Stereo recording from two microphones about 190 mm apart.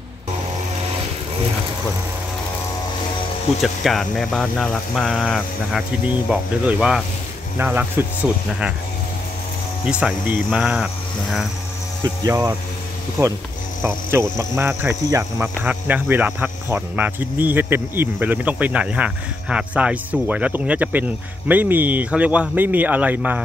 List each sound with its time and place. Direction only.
3.6 s speech: centre (ahead or behind)
9.8 s speech: 5° right (ahead or behind)
12.3 s speech: 15° right (ahead or behind)
14.3 s speech: 15° right (ahead or behind)